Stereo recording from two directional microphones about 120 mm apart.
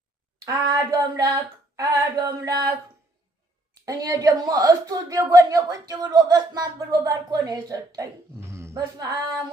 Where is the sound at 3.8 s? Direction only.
30° right (ahead or behind).